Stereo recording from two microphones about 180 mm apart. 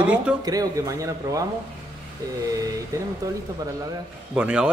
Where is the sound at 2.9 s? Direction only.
15° right (ahead or behind).